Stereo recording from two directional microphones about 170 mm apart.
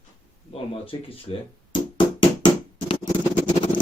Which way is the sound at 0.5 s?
35° left (ahead or behind).